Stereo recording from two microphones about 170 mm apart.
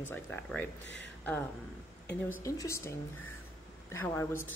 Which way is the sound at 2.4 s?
20° left (ahead or behind).